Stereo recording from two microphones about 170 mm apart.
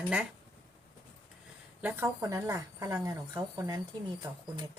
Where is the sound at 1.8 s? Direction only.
15° right (ahead or behind).